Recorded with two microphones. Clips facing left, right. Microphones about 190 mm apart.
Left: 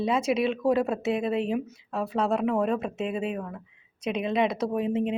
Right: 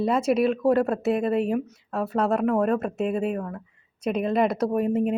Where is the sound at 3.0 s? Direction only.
45° right (ahead or behind).